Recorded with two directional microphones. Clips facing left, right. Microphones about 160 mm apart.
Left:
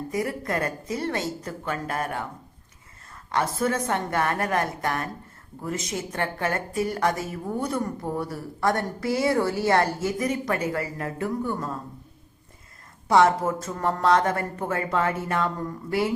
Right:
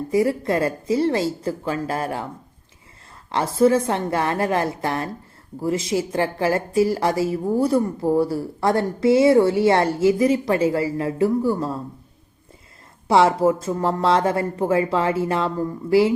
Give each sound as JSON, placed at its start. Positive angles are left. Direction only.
{"t": 0.1, "sound": "a woman's voice", "side_deg": -25}
{"t": 3.3, "sound": "a woman's voice", "side_deg": -25}
{"t": 13.1, "sound": "a woman's voice", "side_deg": -30}